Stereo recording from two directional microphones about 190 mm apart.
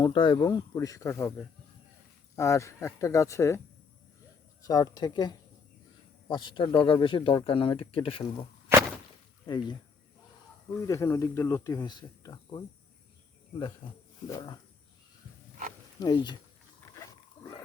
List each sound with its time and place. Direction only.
0.0 s speech: 25° left (ahead or behind)
2.3 s speech: 15° left (ahead or behind)
4.6 s speech: 20° left (ahead or behind)
8.7 s whip: 15° right (ahead or behind)
9.5 s speech: 25° left (ahead or behind)
10.8 s speech: 15° left (ahead or behind)
13.8 s speech: 25° left (ahead or behind)
16.0 s speech: 20° left (ahead or behind)